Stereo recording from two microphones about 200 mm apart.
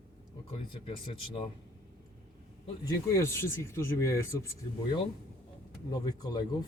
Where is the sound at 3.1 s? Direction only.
15° left (ahead or behind).